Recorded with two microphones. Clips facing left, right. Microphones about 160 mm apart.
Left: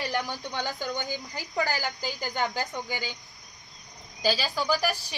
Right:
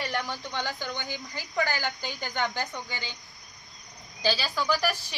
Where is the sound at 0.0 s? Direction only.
10° left (ahead or behind).